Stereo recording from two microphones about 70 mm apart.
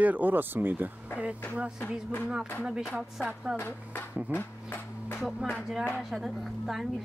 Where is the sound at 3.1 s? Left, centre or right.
Centre.